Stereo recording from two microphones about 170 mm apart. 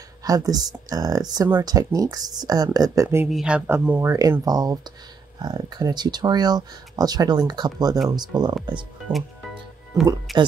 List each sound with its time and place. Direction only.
0.2 s speech: 20° right (ahead or behind)
3.3 s speech: 5° right (ahead or behind); by 8.5 s 25° right (ahead or behind)
10.3 s speech: centre (ahead or behind)